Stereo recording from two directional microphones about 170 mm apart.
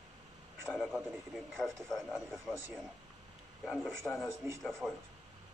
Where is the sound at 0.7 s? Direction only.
Centre (ahead or behind).